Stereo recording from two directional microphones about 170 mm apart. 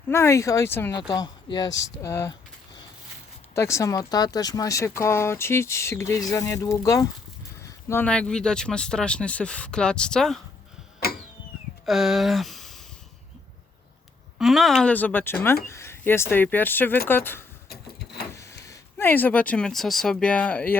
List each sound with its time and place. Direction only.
0.1 s speech: 15° left (ahead or behind)
3.5 s speech: 15° left (ahead or behind)
11.9 s speech: centre (ahead or behind)
14.3 s speech: centre (ahead or behind)
17.7 s printer: 70° left (ahead or behind)
18.6 s speech: 15° left (ahead or behind)